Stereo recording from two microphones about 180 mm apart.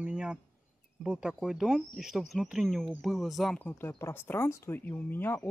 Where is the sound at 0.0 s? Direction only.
5° right (ahead or behind).